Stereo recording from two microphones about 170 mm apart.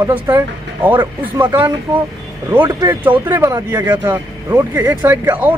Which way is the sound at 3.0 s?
10° right (ahead or behind).